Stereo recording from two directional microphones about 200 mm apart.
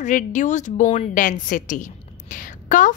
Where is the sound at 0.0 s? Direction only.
40° left (ahead or behind).